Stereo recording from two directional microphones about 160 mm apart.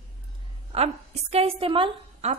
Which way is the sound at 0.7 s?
40° right (ahead or behind).